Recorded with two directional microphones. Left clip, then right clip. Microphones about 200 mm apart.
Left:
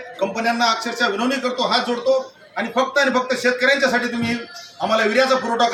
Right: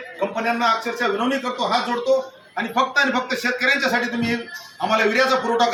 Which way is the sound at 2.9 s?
15° left (ahead or behind).